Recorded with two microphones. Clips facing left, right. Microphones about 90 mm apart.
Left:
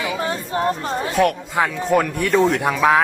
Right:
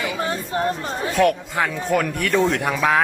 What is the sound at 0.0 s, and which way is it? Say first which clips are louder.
Chatter: left 1 dB; 25° left (ahead or behind).